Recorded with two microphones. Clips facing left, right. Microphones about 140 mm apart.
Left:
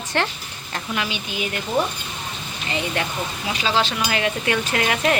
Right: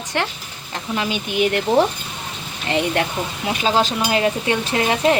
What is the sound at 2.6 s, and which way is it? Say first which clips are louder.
Speech: right 6 dB; 60° right (ahead or behind).